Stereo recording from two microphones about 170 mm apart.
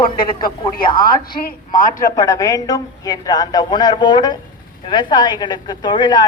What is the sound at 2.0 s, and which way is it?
A woman's voice, 20° left (ahead or behind).